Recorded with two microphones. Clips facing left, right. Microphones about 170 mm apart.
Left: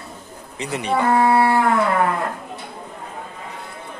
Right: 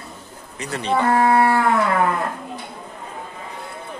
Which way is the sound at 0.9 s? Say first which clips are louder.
Even; 5° left (ahead or behind).